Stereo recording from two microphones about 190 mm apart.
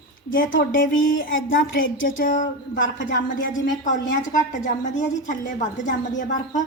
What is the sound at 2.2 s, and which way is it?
Speech, 45° left (ahead or behind).